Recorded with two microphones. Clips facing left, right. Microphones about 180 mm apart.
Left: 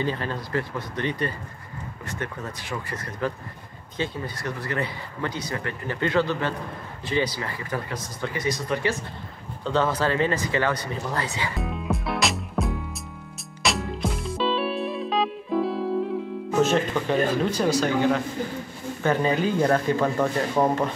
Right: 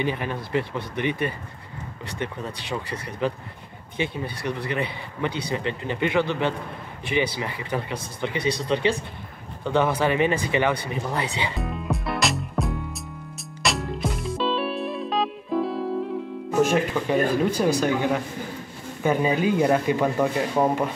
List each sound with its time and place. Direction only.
0.0 s speech: 15° right (ahead or behind)
11.5 s music: centre (ahead or behind)
16.5 s speech: 10° right (ahead or behind)